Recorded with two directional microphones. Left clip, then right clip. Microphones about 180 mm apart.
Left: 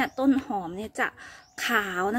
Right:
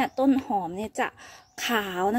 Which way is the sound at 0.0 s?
20° right (ahead or behind).